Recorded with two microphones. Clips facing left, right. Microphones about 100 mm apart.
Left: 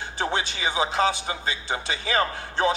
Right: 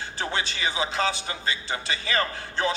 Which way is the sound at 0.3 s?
25° left (ahead or behind).